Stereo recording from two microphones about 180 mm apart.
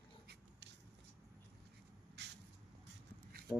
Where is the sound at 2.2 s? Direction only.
70° right (ahead or behind).